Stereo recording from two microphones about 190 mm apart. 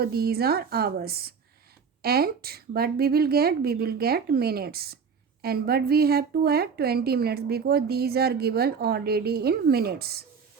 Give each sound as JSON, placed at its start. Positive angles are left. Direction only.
{"t": 0.0, "sound": "a woman's voice", "side_deg": -55}